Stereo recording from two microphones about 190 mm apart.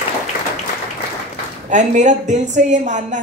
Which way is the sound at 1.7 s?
40° right (ahead or behind).